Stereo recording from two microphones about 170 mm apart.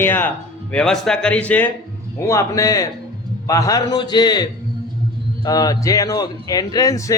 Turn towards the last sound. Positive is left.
turn(degrees=20)  # may be behind; listen again after turning